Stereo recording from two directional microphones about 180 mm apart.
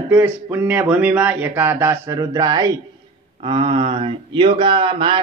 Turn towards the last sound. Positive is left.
turn(degrees=-30)  # may be behind; listen again after turning